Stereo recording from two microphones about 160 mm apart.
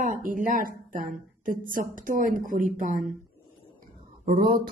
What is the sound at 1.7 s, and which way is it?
Speech, 55° right (ahead or behind).